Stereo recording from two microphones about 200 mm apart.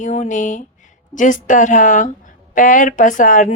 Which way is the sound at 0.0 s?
40° left (ahead or behind).